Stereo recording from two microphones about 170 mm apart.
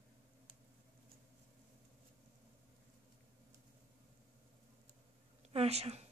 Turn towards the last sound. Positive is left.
turn(degrees=-40)  # may be behind; listen again after turning